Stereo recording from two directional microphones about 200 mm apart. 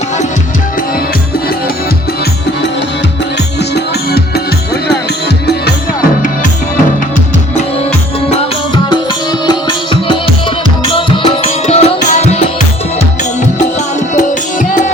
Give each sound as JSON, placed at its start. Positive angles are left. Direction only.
{"t": 9.5, "sound": "music", "side_deg": 25}
{"t": 14.1, "sound": "music", "side_deg": 40}